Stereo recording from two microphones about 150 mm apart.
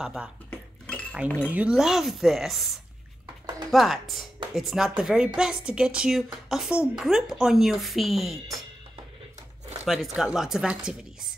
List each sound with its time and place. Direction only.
0.0 s speech: 5° right (ahead or behind)
0.5 s dishes: 10° left (ahead or behind)
1.5 s a woman's voice: 5° right (ahead or behind)
3.7 s a woman's voice: centre (ahead or behind)
9.8 s a woman's voice: centre (ahead or behind)